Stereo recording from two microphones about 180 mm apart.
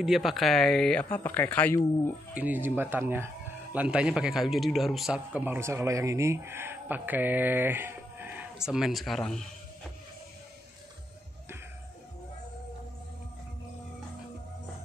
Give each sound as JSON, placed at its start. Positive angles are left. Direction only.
{"t": 0.0, "sound": "speech", "side_deg": 0}
{"t": 2.3, "sound": "a man's voice", "side_deg": -10}